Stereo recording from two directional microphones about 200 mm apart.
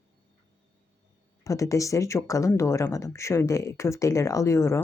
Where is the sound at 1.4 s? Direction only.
15° left (ahead or behind).